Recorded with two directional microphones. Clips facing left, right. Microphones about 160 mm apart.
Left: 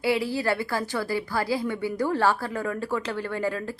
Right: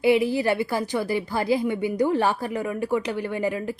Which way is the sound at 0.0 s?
20° right (ahead or behind).